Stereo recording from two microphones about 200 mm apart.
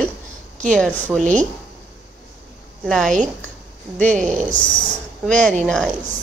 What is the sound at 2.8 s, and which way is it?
A woman's voice, centre (ahead or behind).